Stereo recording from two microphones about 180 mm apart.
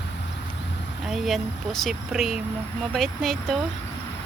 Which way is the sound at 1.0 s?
Centre (ahead or behind).